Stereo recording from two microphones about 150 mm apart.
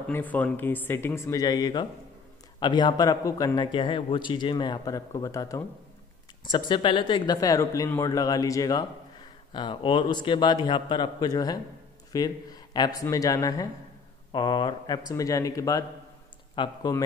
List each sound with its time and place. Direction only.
0.1 s speech: 10° left (ahead or behind)
6.4 s speech: 30° left (ahead or behind)